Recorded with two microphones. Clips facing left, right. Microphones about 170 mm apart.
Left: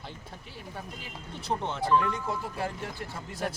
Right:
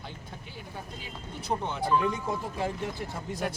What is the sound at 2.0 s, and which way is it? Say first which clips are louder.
Speech: even; 15° right (ahead or behind).